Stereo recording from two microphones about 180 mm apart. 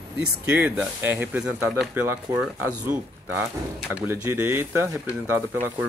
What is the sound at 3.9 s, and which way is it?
Speech, 10° right (ahead or behind).